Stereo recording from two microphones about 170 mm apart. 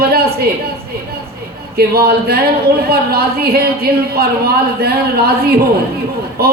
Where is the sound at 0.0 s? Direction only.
65° right (ahead or behind).